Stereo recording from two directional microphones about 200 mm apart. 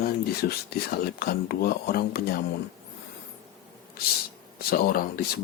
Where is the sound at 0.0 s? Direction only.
50° left (ahead or behind).